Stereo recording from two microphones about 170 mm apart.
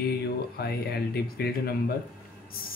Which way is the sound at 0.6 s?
70° left (ahead or behind).